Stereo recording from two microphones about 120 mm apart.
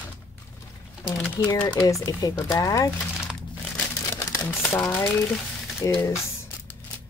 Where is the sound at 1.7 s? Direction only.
30° left (ahead or behind).